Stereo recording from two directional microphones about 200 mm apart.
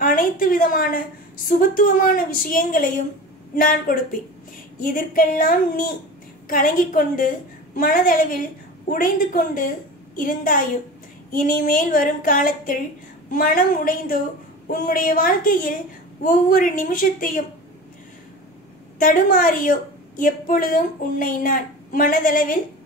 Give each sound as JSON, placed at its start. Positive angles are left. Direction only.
{"t": 0.0, "sound": "a woman's voice", "side_deg": 45}
{"t": 18.9, "sound": "a woman's voice", "side_deg": 45}